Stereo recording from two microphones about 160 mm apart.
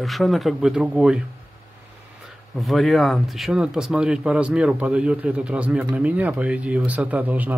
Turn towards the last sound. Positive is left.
turn(degrees=-10)  # may be behind; listen again after turning